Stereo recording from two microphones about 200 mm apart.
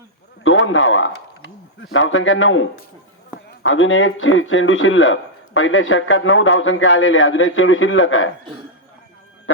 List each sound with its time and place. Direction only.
0.4 s a man's voice: 75° left (ahead or behind)